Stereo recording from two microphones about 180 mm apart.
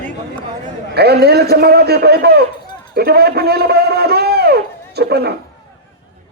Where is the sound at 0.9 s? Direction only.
65° right (ahead or behind).